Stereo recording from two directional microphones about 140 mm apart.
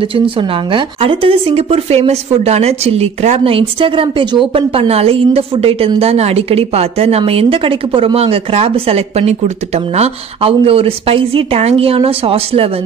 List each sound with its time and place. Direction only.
0.1 s speech: 40° right (ahead or behind)